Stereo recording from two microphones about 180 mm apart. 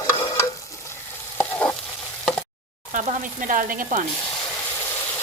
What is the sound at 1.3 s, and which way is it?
Stir, 5° left (ahead or behind).